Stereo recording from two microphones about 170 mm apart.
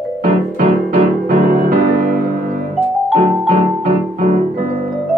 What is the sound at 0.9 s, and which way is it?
Music, 50° right (ahead or behind).